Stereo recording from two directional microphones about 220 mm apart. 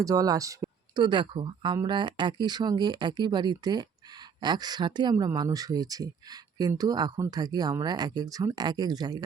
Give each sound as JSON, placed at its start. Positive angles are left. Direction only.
{"t": 0.0, "sound": "speech", "side_deg": -15}